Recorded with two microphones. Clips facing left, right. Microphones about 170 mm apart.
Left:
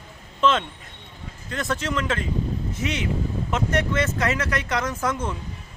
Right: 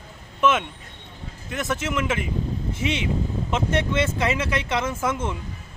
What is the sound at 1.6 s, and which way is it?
Speech, 20° right (ahead or behind).